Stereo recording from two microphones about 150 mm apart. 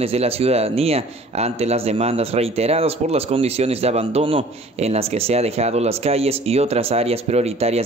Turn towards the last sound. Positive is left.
turn(degrees=-45)  # may be behind; listen again after turning